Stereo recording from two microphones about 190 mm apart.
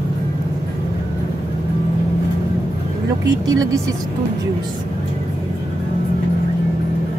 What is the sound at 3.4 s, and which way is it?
Speech, 20° right (ahead or behind).